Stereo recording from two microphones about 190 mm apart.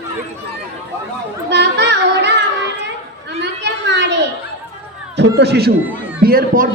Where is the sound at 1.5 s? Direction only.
65° right (ahead or behind).